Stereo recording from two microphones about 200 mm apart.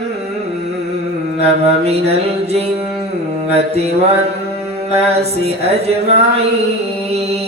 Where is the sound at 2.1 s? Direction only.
30° right (ahead or behind).